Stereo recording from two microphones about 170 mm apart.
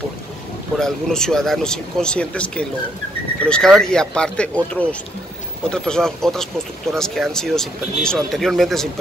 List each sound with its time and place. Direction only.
0.7 s speech: 5° left (ahead or behind)